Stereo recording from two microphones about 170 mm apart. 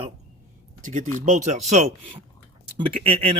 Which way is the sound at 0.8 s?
50° right (ahead or behind).